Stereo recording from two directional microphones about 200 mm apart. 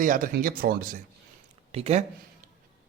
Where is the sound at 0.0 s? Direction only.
45° right (ahead or behind).